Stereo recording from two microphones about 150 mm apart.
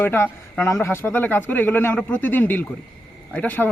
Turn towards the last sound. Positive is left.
turn(degrees=10)  # may be behind; listen again after turning